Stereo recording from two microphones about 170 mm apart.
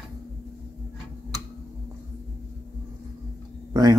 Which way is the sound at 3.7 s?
20° right (ahead or behind).